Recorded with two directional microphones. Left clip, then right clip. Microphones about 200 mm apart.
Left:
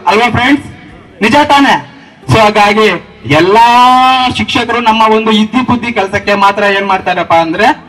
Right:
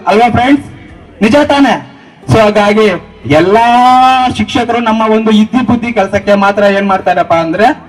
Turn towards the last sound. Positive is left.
turn(degrees=-55)  # may be behind; listen again after turning